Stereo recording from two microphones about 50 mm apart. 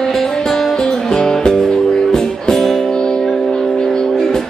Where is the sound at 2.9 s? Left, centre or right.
Centre.